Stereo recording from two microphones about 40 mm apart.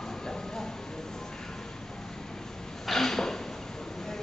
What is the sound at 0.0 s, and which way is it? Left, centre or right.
Train, centre.